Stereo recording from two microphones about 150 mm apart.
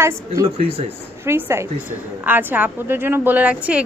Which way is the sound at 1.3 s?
15° right (ahead or behind).